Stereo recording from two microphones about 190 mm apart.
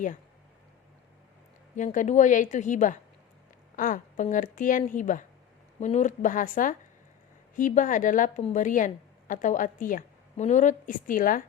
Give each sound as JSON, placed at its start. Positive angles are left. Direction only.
{"t": 1.7, "sound": "a woman's voice", "side_deg": 40}